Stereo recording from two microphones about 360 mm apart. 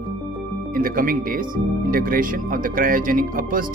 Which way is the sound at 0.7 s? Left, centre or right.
Right.